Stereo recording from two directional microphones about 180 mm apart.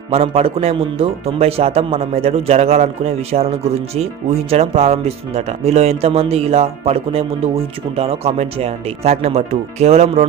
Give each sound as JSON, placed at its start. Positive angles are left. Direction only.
{"t": 0.1, "sound": "speech", "side_deg": -35}